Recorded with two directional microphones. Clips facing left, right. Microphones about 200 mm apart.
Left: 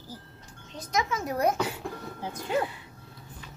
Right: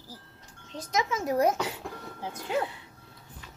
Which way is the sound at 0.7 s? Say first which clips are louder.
Even; 25° right (ahead or behind).